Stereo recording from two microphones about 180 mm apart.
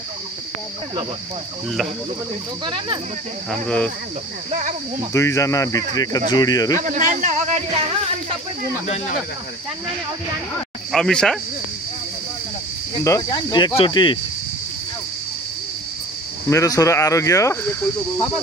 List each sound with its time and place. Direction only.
2.6 s speech: 25° right (ahead or behind)
3.4 s speech: 5° left (ahead or behind)
4.5 s a man's voice: 40° right (ahead or behind)
5.1 s speech: 15° left (ahead or behind)
6.3 s cricket: 20° left (ahead or behind)
6.8 s a man's voice: 45° right (ahead or behind)
8.8 s speech: 35° left (ahead or behind)
10.9 s speech: 5° left (ahead or behind)
13.0 s cricket: 20° left (ahead or behind)
16.4 s speech: 20° left (ahead or behind)